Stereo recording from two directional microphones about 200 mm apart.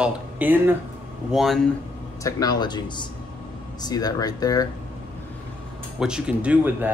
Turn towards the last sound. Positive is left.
turn(degrees=-10)  # may be behind; listen again after turning